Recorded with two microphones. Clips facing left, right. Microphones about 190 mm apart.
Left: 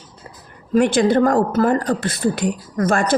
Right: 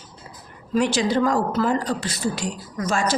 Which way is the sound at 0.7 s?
55° left (ahead or behind).